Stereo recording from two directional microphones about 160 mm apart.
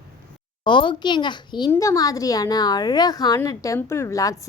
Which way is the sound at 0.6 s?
30° left (ahead or behind).